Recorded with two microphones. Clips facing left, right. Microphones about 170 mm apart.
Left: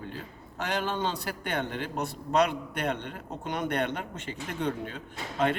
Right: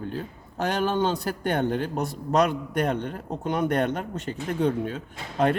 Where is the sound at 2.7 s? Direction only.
40° right (ahead or behind).